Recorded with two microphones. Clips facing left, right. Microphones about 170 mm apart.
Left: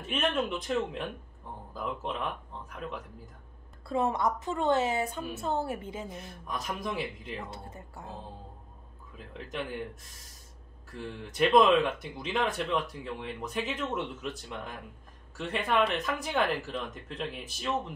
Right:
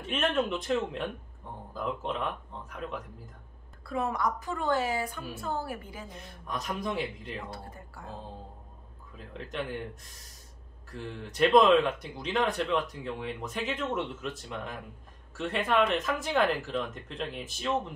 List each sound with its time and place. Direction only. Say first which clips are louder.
0.0 s speech: right 1 dB; centre (ahead or behind)
3.8 s a woman's voice: left 2 dB; 25° left (ahead or behind)
6.4 s speech: right 2 dB; centre (ahead or behind)
7.5 s speech: even; 20° left (ahead or behind)
11.1 s speech: right 1 dB; centre (ahead or behind)